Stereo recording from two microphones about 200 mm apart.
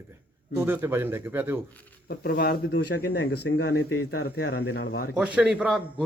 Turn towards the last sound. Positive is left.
turn(degrees=-5)  # may be behind; listen again after turning